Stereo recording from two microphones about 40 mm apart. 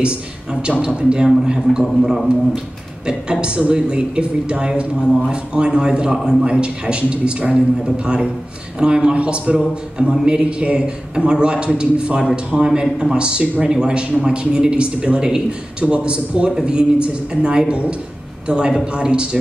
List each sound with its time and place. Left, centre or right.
0.0 s a man's voice: right